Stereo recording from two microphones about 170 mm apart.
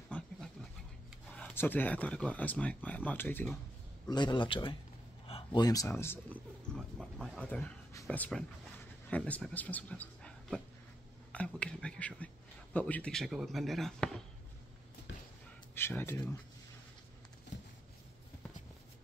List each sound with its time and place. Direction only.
0.1 s dog: 5° left (ahead or behind)
1.3 s speech: 10° left (ahead or behind)
4.1 s a man's voice: 25° left (ahead or behind)
5.9 s speech: 10° left (ahead or behind)
15.7 s speech: 10° left (ahead or behind)